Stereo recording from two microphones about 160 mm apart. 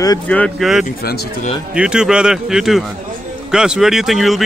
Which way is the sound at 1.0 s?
75° left (ahead or behind).